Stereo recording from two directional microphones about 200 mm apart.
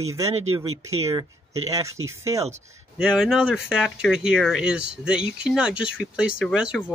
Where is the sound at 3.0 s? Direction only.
5° right (ahead or behind).